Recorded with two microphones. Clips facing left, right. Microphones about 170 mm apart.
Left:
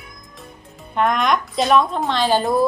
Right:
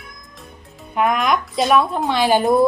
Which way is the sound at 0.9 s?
5° right (ahead or behind).